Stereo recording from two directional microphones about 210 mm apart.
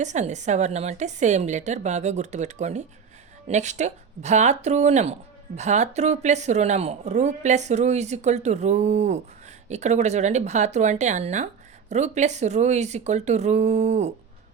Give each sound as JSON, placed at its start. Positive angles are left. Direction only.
{"t": 0.0, "sound": "a woman's voice", "side_deg": -35}